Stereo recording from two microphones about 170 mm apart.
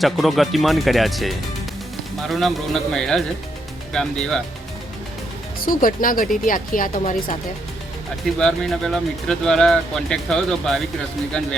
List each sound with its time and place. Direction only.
0.0 s speech: centre (ahead or behind)
5.5 s speech: 55° left (ahead or behind)
8.4 s speech: 5° left (ahead or behind)